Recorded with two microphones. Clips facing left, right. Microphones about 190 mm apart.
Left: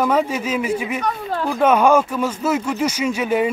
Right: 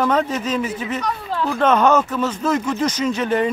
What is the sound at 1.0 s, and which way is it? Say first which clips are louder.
Speech: left 1 dB; 50° left (ahead or behind).